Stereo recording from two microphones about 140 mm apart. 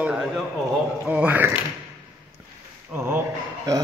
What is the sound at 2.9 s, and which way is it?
Speech, 15° right (ahead or behind).